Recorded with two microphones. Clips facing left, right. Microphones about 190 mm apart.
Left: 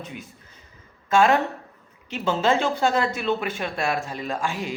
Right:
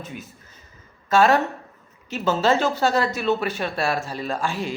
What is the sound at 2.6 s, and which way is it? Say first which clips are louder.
Speech: right 1 dB; 20° left (ahead or behind).